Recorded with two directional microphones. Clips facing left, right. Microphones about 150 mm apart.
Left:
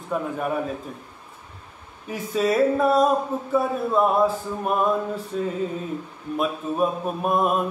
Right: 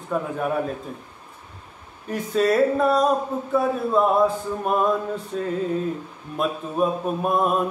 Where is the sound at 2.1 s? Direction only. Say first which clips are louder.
Right 2 dB; 5° left (ahead or behind).